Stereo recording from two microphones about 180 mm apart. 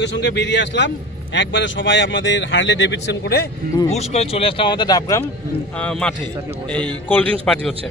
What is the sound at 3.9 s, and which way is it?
Speech, 35° left (ahead or behind).